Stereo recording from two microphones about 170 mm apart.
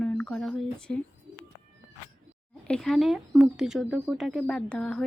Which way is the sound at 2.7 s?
5° left (ahead or behind).